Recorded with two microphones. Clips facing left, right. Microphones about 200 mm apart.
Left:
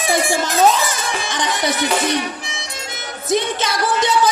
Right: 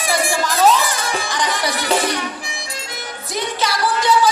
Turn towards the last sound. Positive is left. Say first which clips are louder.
# left 1 dB
turn(degrees=20)  # may be behind; listen again after turning